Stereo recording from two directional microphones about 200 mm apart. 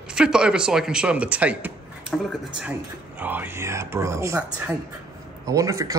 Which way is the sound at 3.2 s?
10° right (ahead or behind).